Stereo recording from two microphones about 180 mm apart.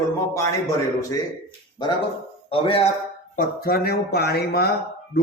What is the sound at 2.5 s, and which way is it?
Speech, 30° left (ahead or behind).